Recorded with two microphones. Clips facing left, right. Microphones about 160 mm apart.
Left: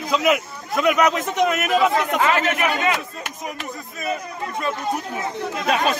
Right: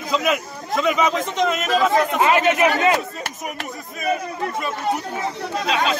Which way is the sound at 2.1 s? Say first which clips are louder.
Right 3 dB; 20° right (ahead or behind).